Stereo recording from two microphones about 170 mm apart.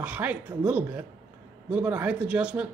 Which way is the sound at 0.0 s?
10° right (ahead or behind).